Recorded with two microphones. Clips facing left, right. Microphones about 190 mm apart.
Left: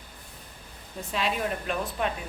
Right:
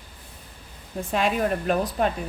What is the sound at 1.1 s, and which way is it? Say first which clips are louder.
Speech: right 6 dB; 45° right (ahead or behind).